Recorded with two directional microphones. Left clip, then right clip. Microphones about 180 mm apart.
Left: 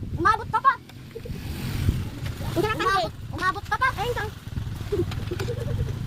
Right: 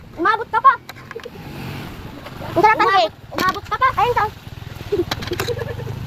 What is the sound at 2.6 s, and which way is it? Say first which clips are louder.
Speech: right 10 dB; 20° left (ahead or behind).